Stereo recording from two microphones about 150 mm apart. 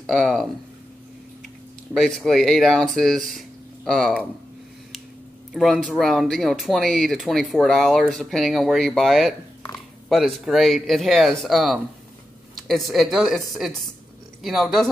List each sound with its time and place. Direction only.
0.0 s speech: centre (ahead or behind)
2.0 s speech: centre (ahead or behind)
5.5 s speech: centre (ahead or behind)